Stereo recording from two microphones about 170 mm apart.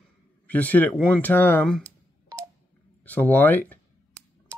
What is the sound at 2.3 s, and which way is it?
Telephone dialing, 20° right (ahead or behind).